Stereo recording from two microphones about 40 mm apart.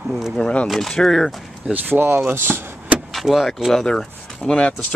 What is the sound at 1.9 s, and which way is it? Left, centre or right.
Speech, right.